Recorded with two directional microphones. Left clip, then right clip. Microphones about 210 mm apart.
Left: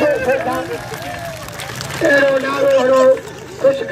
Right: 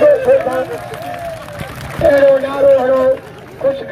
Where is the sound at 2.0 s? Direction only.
45° right (ahead or behind).